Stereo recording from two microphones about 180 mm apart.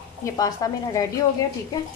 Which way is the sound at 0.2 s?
20° left (ahead or behind).